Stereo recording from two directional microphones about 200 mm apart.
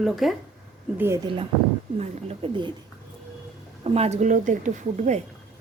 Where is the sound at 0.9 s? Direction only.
10° right (ahead or behind).